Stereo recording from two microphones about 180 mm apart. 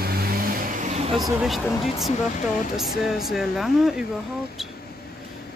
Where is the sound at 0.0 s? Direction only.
55° right (ahead or behind); by 1.1 s 40° right (ahead or behind).